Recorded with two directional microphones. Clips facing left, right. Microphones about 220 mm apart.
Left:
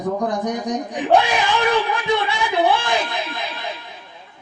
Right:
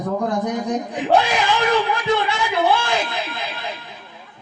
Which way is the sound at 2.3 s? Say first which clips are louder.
Left 1 dB; 15° left (ahead or behind).